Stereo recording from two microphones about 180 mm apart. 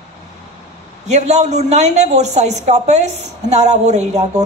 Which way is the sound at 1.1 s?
40° right (ahead or behind).